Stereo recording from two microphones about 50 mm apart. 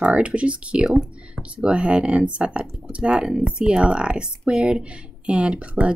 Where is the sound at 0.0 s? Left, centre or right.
Right.